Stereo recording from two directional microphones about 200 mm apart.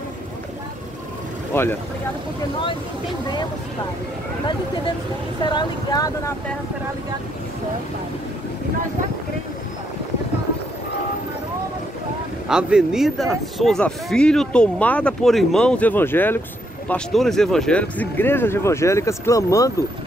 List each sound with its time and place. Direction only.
1.5 s speech: 10° left (ahead or behind)
5.5 s speech: 20° left (ahead or behind)
12.4 s speech: 5° right (ahead or behind); by 19.7 s 15° left (ahead or behind)